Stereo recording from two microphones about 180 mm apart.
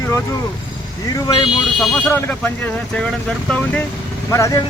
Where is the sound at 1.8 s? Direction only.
5° left (ahead or behind).